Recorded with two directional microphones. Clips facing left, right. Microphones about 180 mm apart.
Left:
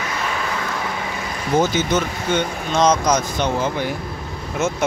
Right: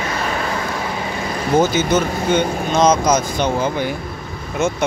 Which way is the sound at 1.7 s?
5° right (ahead or behind).